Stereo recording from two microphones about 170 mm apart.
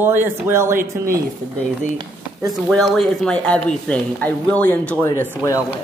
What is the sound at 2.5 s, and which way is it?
Speech, centre (ahead or behind).